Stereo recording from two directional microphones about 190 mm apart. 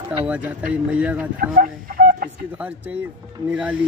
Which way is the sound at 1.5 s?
50° right (ahead or behind).